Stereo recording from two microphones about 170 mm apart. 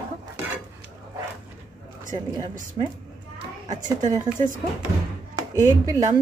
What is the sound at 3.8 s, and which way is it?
Speech, 50° right (ahead or behind).